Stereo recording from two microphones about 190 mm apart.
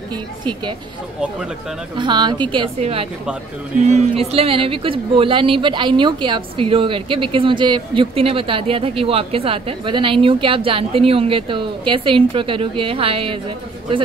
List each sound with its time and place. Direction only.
2.0 s speech: 25° right (ahead or behind)